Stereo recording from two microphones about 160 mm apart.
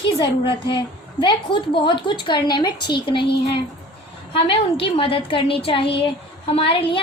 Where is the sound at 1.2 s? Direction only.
30° left (ahead or behind).